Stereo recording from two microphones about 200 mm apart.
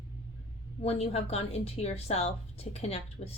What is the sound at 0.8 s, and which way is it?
A woman's voice, 30° left (ahead or behind).